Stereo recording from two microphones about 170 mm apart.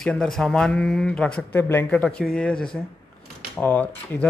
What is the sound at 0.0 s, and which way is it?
Speech, centre (ahead or behind).